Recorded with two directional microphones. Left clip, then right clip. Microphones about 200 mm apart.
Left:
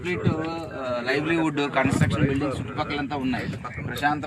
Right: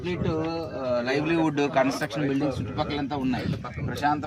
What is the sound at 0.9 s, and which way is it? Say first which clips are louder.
A man's voice: left 1 dB; centre (ahead or behind).